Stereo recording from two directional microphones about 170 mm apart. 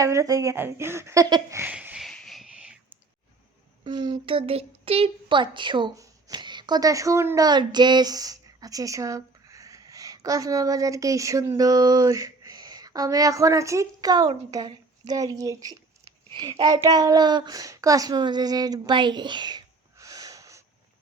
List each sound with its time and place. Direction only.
0.0 s speech: 20° right (ahead or behind); by 2.7 s 5° right (ahead or behind)
3.8 s a child's voice: 25° right (ahead or behind)